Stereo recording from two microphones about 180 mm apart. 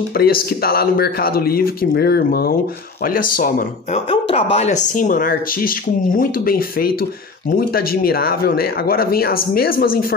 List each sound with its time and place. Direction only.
0.2 s speech: 55° left (ahead or behind)
4.1 s speech: 35° left (ahead or behind); by 9.9 s 55° left (ahead or behind)